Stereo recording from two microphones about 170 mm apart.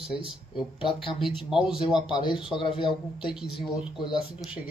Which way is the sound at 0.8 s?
30° left (ahead or behind).